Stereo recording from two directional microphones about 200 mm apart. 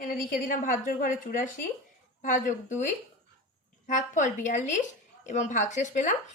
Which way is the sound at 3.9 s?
40° left (ahead or behind).